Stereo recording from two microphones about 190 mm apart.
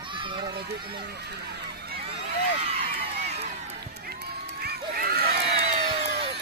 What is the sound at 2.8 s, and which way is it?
Crowd, 35° right (ahead or behind).